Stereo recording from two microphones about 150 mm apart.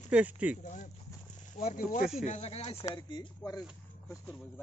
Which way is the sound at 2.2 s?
50° left (ahead or behind).